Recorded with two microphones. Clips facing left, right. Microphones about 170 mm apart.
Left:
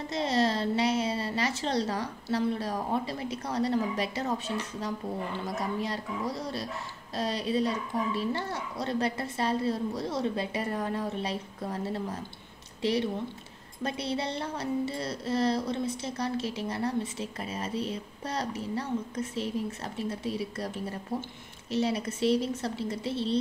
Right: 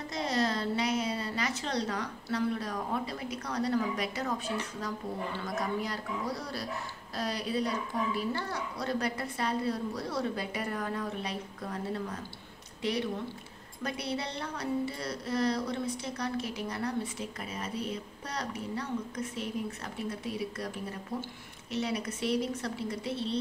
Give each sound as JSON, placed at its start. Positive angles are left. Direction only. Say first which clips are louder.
{"t": 0.1, "sound": "a woman's voice", "louder": "left 4 dB", "side_deg": 25}
{"t": 12.8, "sound": "a woman's voice", "louder": "left 4 dB", "side_deg": 30}